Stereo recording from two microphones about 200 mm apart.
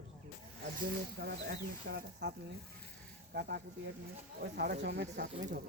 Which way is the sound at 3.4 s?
55° right (ahead or behind).